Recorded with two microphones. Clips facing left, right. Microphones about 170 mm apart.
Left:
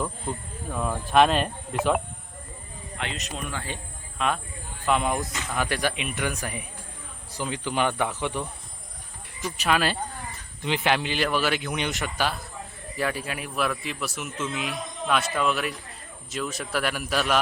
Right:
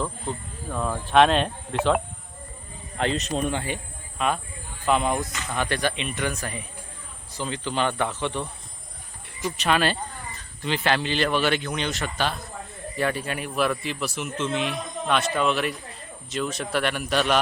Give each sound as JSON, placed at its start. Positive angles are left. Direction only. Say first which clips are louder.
{"t": 0.7, "sound": "speech", "louder": "right 1 dB", "side_deg": 0}
{"t": 3.0, "sound": "a man's voice", "louder": "right 9 dB", "side_deg": -35}
{"t": 3.5, "sound": "a man's voice", "louder": "right 6 dB", "side_deg": -20}
{"t": 4.2, "sound": "speech", "louder": "right 1 dB", "side_deg": 0}
{"t": 9.6, "sound": "speech", "louder": "right 1 dB", "side_deg": 5}
{"t": 10.3, "sound": "speech", "louder": "even", "side_deg": 20}
{"t": 11.7, "sound": "speech", "louder": "right 1 dB", "side_deg": 15}
{"t": 12.1, "sound": "speech", "louder": "right 1 dB", "side_deg": 5}